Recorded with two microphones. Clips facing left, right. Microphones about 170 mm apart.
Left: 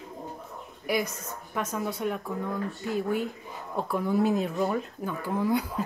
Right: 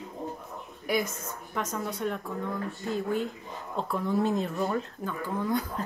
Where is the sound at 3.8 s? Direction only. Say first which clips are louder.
Left 2 dB; 10° left (ahead or behind).